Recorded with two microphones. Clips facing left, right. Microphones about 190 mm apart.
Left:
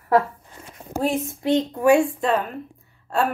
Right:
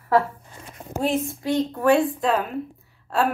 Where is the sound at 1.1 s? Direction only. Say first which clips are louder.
Left 2 dB; 20° left (ahead or behind).